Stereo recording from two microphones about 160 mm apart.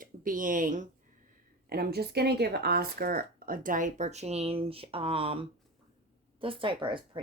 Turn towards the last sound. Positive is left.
turn(degrees=-30)  # may be behind; listen again after turning